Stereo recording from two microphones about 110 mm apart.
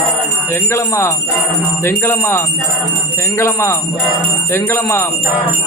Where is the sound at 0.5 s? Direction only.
25° left (ahead or behind).